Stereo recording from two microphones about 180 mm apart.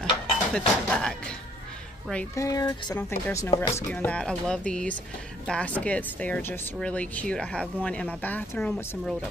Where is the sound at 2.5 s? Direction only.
20° left (ahead or behind).